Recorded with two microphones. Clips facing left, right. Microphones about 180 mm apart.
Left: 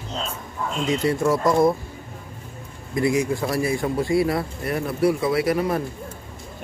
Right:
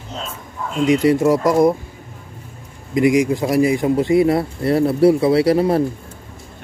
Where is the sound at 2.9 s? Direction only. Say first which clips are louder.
Right 6 dB; 15° right (ahead or behind).